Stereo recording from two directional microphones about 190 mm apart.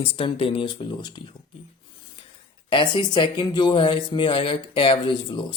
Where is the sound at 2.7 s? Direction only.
25° left (ahead or behind).